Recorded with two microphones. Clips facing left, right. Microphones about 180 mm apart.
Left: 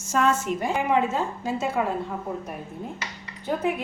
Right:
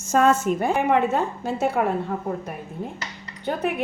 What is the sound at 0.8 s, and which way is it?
A woman's voice, 65° right (ahead or behind).